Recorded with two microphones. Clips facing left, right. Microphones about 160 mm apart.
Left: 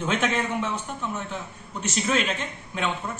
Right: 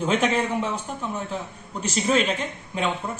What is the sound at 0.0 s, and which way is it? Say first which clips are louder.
A man's voice: right 3 dB; 35° right (ahead or behind).